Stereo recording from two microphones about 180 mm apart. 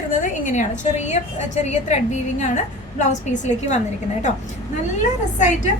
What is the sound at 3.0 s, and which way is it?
Speech, 40° left (ahead or behind).